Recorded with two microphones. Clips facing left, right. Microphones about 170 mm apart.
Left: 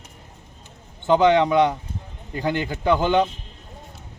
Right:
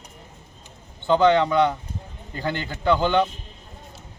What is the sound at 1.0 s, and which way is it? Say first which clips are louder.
A man's voice: left 1 dB; 15° left (ahead or behind).